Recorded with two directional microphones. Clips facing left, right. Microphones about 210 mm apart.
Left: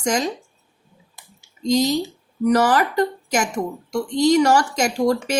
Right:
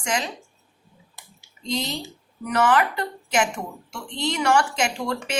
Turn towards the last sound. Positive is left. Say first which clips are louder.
# left 7 dB
turn(degrees=40)  # may be behind; listen again after turning